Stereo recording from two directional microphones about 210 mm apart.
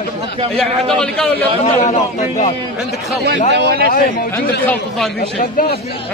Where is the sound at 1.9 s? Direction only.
35° left (ahead or behind).